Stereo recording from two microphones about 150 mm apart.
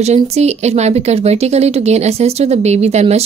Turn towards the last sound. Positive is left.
turn(degrees=-45)  # may be behind; listen again after turning